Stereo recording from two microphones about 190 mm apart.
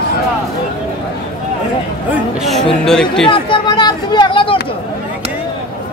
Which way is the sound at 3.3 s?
25° left (ahead or behind).